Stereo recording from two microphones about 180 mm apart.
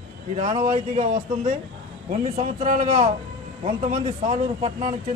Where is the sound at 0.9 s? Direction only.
40° right (ahead or behind).